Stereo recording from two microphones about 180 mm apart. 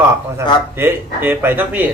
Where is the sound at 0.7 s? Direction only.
10° right (ahead or behind).